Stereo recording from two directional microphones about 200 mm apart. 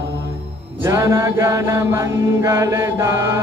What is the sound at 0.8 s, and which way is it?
Mantra, 15° right (ahead or behind).